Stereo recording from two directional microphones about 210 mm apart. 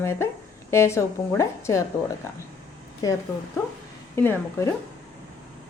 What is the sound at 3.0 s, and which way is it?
Speech, 15° left (ahead or behind).